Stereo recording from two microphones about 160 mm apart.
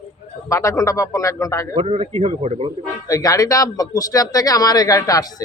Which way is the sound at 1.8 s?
40° right (ahead or behind).